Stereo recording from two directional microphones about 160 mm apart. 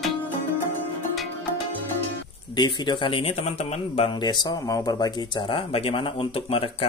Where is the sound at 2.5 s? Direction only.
30° left (ahead or behind).